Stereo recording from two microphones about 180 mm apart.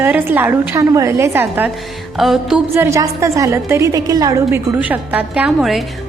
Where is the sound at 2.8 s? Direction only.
15° right (ahead or behind).